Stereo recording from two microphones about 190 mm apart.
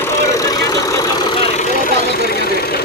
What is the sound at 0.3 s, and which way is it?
Vehicle, 20° left (ahead or behind).